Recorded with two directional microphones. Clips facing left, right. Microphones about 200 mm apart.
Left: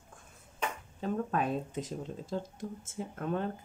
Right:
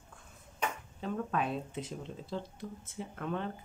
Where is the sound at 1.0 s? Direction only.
45° left (ahead or behind).